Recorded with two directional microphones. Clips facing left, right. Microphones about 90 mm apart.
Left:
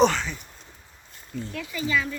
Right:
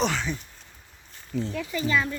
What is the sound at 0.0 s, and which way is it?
Speech, 5° right (ahead or behind).